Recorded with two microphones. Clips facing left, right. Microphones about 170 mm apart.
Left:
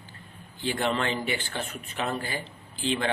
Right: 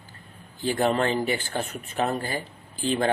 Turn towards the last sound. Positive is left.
turn(degrees=-45)  # may be behind; listen again after turning